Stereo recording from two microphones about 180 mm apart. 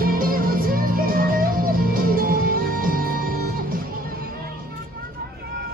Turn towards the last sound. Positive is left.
turn(degrees=-55)  # may be behind; listen again after turning